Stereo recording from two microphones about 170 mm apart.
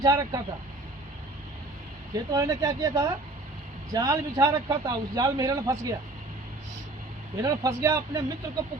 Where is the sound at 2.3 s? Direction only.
20° right (ahead or behind).